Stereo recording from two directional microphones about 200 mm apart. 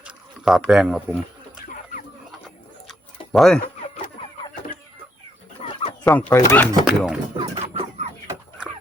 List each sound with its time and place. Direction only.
0.0 s a sound: centre (ahead or behind)
1.6 s chicken: 40° left (ahead or behind)
3.3 s speech: centre (ahead or behind)
3.6 s chicken: 35° left (ahead or behind)
5.6 s chicken: 35° left (ahead or behind)
6.1 s speech: 5° left (ahead or behind)
6.8 s speech: 5° right (ahead or behind)
7.3 s chicken: 35° right (ahead or behind)